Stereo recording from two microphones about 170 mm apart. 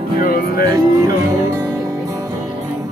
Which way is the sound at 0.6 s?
20° right (ahead or behind).